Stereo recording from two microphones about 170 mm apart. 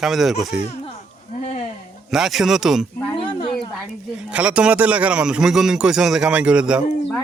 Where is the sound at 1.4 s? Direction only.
40° left (ahead or behind).